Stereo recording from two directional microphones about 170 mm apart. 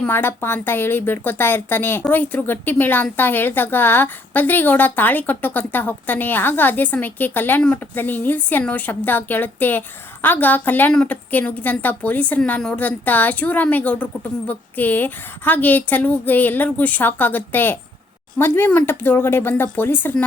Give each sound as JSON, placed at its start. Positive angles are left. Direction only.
{"t": 0.0, "sound": "a woman's voice", "side_deg": 10}